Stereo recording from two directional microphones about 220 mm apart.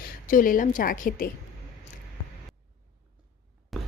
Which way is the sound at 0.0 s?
40° left (ahead or behind).